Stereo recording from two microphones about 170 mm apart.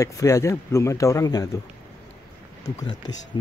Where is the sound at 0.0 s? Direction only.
20° left (ahead or behind).